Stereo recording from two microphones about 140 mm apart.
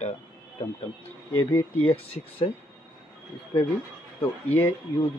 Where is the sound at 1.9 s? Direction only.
45° left (ahead or behind).